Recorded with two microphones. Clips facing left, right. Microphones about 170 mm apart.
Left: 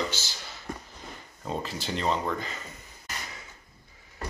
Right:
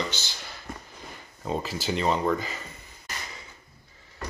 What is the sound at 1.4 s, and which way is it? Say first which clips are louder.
Speech: right 4 dB; 5° right (ahead or behind).